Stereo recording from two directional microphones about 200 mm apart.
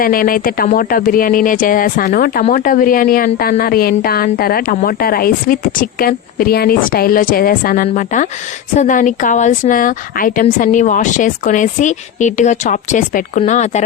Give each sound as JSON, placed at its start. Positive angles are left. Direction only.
{"t": 0.0, "sound": "a woman's voice", "side_deg": 45}